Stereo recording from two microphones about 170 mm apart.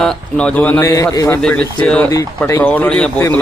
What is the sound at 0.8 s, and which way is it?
Speech, 20° left (ahead or behind).